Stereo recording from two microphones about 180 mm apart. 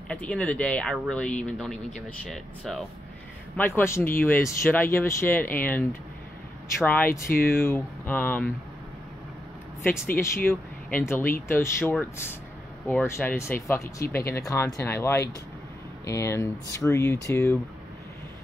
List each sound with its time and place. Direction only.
0.1 s speech: 5° left (ahead or behind)
3.5 s speech: 10° left (ahead or behind)
10.1 s speech: 15° left (ahead or behind)
11.8 s speech: 5° left (ahead or behind)
12.8 s speech: 15° left (ahead or behind)